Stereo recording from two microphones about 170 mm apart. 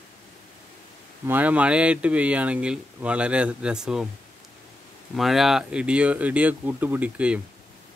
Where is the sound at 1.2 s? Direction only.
10° right (ahead or behind).